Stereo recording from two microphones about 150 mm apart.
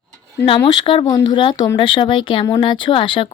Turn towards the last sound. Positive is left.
turn(degrees=35)  # may be behind; listen again after turning